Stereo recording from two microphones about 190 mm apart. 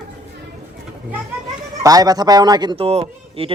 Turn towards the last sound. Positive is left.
turn(degrees=-30)  # may be behind; listen again after turning